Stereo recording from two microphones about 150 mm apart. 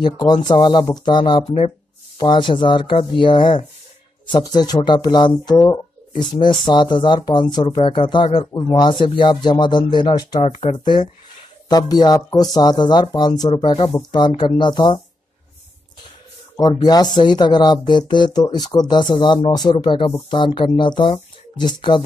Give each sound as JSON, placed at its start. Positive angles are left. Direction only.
{"t": 0.0, "sound": "speech", "side_deg": 30}
{"t": 10.4, "sound": "speech", "side_deg": 40}
{"t": 13.6, "sound": "speech", "side_deg": 40}
{"t": 16.5, "sound": "speech", "side_deg": 25}